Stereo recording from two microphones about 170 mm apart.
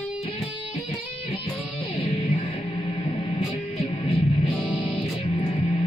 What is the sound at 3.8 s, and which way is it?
Music, 35° left (ahead or behind).